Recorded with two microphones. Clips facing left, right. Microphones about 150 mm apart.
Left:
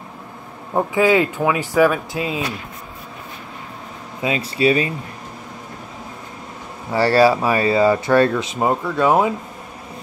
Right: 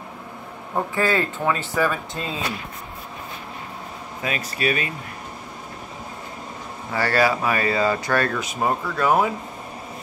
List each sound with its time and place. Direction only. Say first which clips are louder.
0.9 s speech: left 7 dB; 15° left (ahead or behind)
4.2 s speech: left 7 dB; 25° left (ahead or behind)
6.9 s speech: left 6 dB; 30° left (ahead or behind)